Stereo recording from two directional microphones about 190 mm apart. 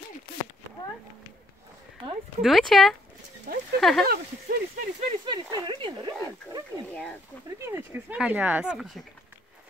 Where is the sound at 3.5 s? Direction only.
50° right (ahead or behind).